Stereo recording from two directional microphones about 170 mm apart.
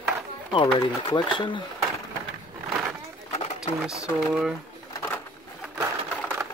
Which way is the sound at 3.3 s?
40° left (ahead or behind).